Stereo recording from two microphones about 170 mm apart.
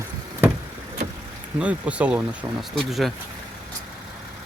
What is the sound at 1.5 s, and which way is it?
Speech, 5° right (ahead or behind).